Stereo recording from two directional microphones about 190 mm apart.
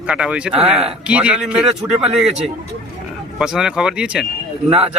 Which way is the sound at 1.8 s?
30° right (ahead or behind).